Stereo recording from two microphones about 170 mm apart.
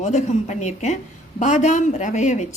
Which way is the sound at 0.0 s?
45° left (ahead or behind).